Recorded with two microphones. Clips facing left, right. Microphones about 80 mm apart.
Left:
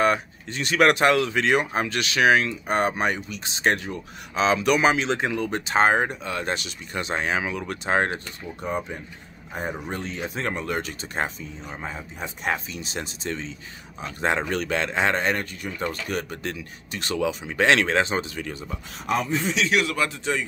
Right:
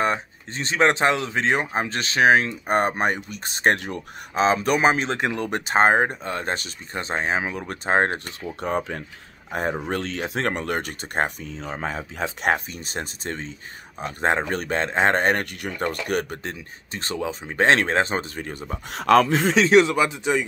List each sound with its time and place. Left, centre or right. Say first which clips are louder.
0.0 s speech: left 2 dB; right
8.5 s speech: right 3 dB; right
9.8 s speech: right 4 dB; right
11.6 s speech: right 6 dB; right
12.5 s speech: right 1 dB; right
16.4 s speech: left 1 dB; right
18.9 s speech: right 8 dB; right
19.5 s speech: right 9 dB; right
20.0 s a man's voice: right 4 dB; centre